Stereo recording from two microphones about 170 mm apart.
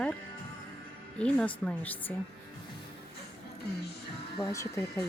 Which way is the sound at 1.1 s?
5° left (ahead or behind).